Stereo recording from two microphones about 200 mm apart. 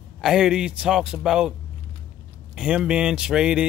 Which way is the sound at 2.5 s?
5° right (ahead or behind).